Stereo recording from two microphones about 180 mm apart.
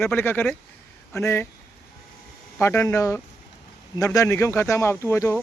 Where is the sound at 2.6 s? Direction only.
15° left (ahead or behind).